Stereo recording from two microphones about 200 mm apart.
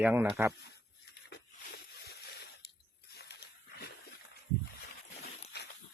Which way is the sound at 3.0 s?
55° left (ahead or behind).